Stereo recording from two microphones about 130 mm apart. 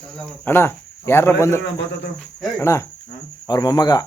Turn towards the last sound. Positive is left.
turn(degrees=30)  # may be behind; listen again after turning